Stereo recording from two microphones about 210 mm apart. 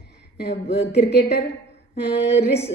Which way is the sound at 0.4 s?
50° left (ahead or behind).